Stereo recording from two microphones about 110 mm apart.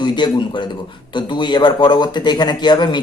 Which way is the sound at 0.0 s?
45° left (ahead or behind).